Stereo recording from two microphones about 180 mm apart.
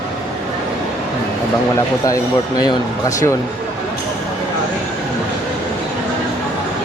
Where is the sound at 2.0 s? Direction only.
20° left (ahead or behind).